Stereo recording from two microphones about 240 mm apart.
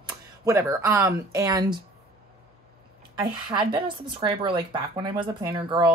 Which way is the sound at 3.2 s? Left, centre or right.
Centre.